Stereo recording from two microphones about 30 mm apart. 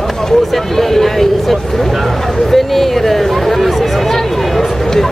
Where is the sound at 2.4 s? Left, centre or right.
Centre.